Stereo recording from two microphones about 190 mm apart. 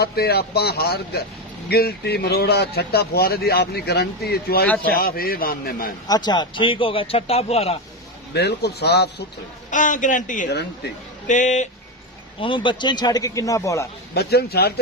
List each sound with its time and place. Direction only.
0.0 s a man's voice: 55° left (ahead or behind)
6.1 s speech: 20° left (ahead or behind)
8.3 s speech: 60° left (ahead or behind)
9.6 s a man's voice: 40° left (ahead or behind)
12.4 s speech: 25° left (ahead or behind)
14.1 s speech: 55° left (ahead or behind)